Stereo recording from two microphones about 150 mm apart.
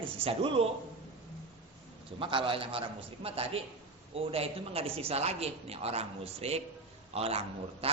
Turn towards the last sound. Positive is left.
turn(degrees=-40)  # may be behind; listen again after turning